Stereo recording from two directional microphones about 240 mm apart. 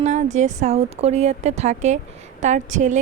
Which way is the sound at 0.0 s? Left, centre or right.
Right.